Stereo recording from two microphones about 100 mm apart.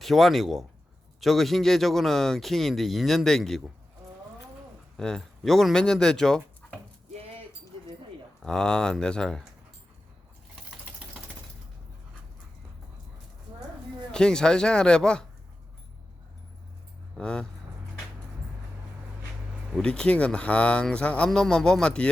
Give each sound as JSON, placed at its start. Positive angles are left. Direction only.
{"t": 0.0, "sound": "speech", "side_deg": 0}
{"t": 4.9, "sound": "speech", "side_deg": 5}
{"t": 7.1, "sound": "a sound", "side_deg": -80}
{"t": 8.4, "sound": "speech", "side_deg": 5}
{"t": 14.1, "sound": "speech", "side_deg": 5}
{"t": 17.2, "sound": "speech", "side_deg": 10}
{"t": 19.7, "sound": "speech", "side_deg": 10}